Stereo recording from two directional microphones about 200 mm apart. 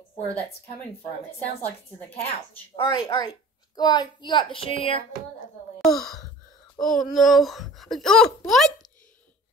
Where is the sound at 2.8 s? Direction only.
20° left (ahead or behind).